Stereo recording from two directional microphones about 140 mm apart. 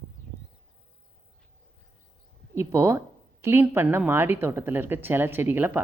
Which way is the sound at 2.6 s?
20° right (ahead or behind).